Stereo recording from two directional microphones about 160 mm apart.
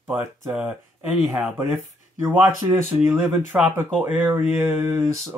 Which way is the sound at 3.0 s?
15° right (ahead or behind).